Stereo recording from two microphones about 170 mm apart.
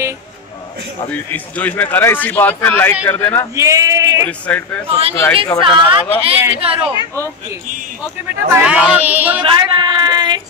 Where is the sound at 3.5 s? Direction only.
20° right (ahead or behind).